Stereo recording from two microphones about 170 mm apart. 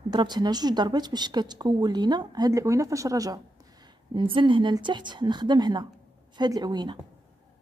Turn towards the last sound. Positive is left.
turn(degrees=-25)  # may be behind; listen again after turning